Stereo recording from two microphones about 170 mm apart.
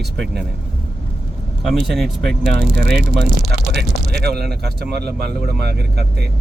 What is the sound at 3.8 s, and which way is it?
Speech, 70° right (ahead or behind).